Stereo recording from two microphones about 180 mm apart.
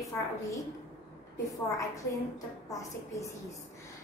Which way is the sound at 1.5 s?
15° left (ahead or behind).